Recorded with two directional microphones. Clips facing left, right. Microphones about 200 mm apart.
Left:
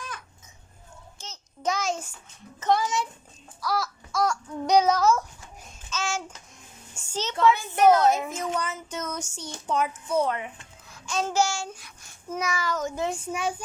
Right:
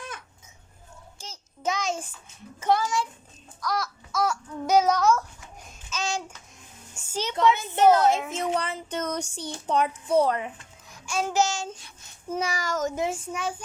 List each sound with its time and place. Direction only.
1.2 s child singing: 10° right (ahead or behind)
1.7 s a child's voice: centre (ahead or behind)
2.8 s a child's voice: 20° left (ahead or behind)
3.6 s babbling: 5° left (ahead or behind)
5.9 s babbling: 15° right (ahead or behind)
7.0 s a woman's voice: 10° right (ahead or behind); by 10.4 s 35° right (ahead or behind)
10.8 s a child's voice: 15° right (ahead or behind); by 12.9 s 45° right (ahead or behind)
13.0 s a child's voice: 5° right (ahead or behind)